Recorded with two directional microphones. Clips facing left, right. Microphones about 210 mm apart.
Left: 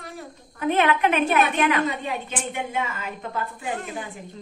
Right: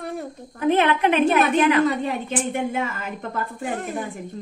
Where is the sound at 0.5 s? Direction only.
30° right (ahead or behind).